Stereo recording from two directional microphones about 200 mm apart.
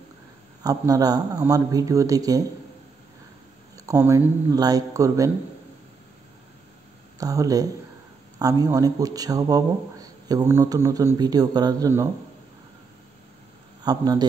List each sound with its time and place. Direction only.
0.7 s a man's voice: 20° right (ahead or behind)
3.7 s a man's voice: 15° right (ahead or behind)
7.2 s a man's voice: 15° right (ahead or behind)
13.8 s a man's voice: 20° right (ahead or behind)